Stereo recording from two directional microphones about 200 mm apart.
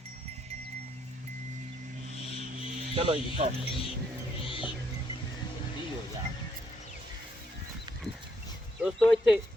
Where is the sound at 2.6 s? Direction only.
30° right (ahead or behind).